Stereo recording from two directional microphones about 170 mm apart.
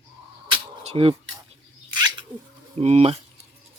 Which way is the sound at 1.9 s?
25° right (ahead or behind).